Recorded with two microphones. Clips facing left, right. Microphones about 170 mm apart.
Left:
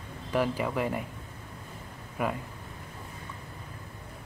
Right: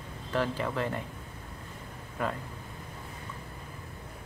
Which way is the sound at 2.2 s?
10° left (ahead or behind).